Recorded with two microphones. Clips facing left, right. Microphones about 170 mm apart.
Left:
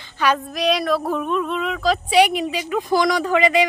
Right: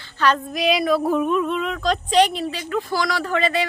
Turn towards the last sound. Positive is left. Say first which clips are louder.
# left 4 dB
turn(degrees=15)  # may be behind; listen again after turning